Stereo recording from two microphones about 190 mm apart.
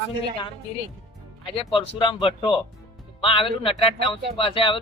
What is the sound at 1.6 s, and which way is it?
A man's voice, 25° left (ahead or behind).